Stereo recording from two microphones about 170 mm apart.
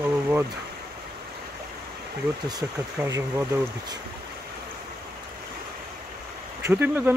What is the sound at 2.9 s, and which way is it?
Speech, 15° right (ahead or behind).